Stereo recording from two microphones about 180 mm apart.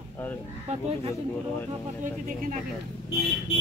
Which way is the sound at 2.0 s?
45° right (ahead or behind).